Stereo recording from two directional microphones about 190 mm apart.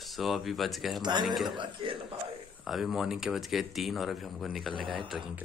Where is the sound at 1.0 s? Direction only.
25° right (ahead or behind).